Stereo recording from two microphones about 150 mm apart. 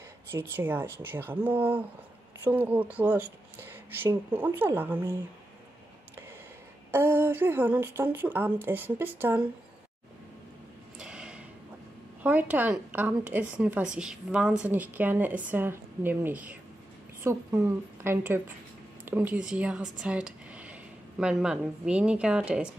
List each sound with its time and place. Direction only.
0.3 s a woman's voice: 15° right (ahead or behind)
6.9 s a woman's voice: 15° right (ahead or behind)
11.0 s a sound: 5° right (ahead or behind)
12.2 s a woman's voice: 10° right (ahead or behind)